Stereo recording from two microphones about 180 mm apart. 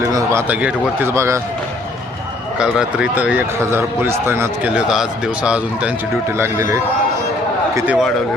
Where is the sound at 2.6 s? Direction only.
5° right (ahead or behind).